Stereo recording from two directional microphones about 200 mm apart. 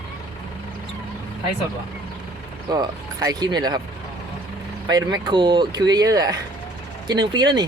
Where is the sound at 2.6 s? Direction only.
20° right (ahead or behind).